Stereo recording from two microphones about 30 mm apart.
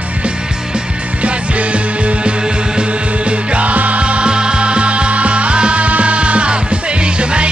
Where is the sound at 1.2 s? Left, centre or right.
Right.